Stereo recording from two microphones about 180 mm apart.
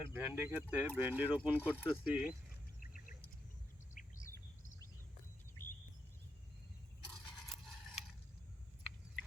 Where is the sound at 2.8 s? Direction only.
50° left (ahead or behind).